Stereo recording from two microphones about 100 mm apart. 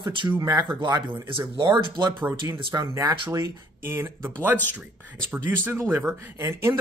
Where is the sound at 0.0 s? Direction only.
50° right (ahead or behind).